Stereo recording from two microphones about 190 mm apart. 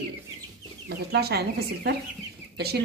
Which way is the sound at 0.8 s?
55° right (ahead or behind).